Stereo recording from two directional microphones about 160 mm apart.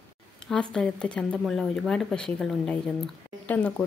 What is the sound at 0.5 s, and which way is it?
Speech, 5° left (ahead or behind).